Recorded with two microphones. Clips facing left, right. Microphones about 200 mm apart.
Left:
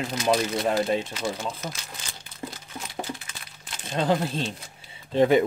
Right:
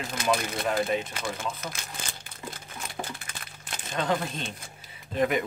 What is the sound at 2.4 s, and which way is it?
Crumpling, 50° left (ahead or behind).